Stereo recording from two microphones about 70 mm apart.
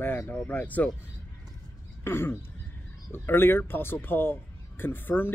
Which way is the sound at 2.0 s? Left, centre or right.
Left.